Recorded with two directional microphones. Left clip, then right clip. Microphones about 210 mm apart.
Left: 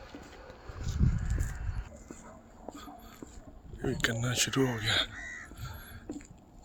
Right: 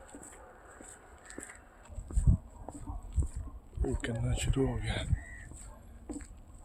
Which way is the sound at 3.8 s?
5° left (ahead or behind).